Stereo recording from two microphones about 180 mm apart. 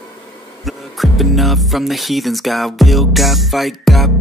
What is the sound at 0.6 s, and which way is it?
Speech, centre (ahead or behind).